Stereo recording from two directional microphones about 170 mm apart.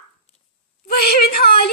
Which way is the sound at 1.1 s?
65° left (ahead or behind).